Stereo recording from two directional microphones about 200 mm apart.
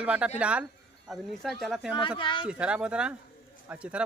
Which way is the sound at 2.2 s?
25° left (ahead or behind).